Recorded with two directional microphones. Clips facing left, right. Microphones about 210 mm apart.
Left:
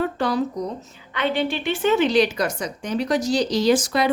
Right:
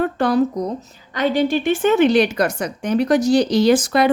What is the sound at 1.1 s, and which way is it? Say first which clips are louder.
A woman's voice: right 5 dB; 40° right (ahead or behind).